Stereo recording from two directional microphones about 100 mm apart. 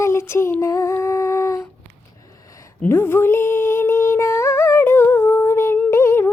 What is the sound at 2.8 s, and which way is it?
Music, 20° left (ahead or behind).